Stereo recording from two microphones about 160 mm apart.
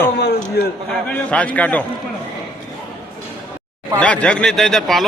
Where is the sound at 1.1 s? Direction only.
10° left (ahead or behind).